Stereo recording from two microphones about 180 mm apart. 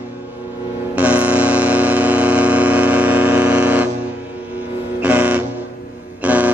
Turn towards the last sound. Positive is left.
turn(degrees=-10)  # may be behind; listen again after turning